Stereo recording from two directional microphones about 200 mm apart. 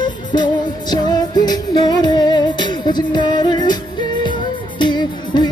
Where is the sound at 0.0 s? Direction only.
20° left (ahead or behind).